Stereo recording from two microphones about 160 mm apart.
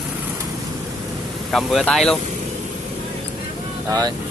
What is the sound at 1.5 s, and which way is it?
Speech, 5° left (ahead or behind).